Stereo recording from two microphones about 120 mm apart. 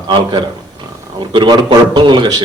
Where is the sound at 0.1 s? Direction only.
40° right (ahead or behind).